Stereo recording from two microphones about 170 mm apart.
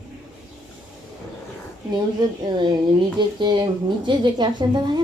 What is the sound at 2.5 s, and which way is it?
Speech, 25° right (ahead or behind).